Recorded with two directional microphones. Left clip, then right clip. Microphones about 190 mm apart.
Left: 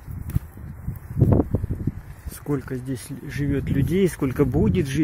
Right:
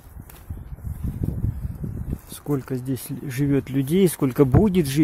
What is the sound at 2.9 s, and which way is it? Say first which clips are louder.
Speech: right 2 dB; 35° right (ahead or behind).